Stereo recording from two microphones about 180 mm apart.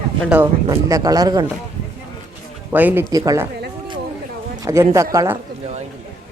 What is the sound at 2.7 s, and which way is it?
Speech, 10° right (ahead or behind).